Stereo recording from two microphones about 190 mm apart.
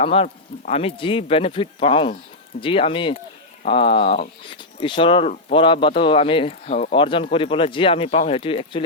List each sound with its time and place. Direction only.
0.0 s speech: 30° left (ahead or behind)
6.9 s speech: 25° left (ahead or behind)